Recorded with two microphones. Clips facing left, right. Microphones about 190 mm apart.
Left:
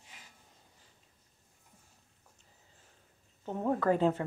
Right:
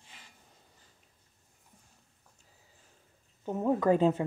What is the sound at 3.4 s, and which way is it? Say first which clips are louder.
Speech: right 3 dB; 10° right (ahead or behind).